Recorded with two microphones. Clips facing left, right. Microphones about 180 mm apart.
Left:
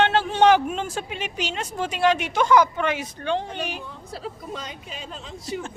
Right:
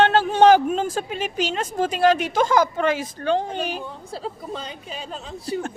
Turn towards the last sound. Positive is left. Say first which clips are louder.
# right 3 dB
turn(degrees=-40)  # may be behind; listen again after turning